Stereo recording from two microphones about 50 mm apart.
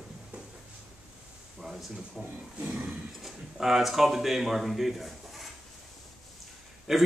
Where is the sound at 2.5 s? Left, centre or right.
Right.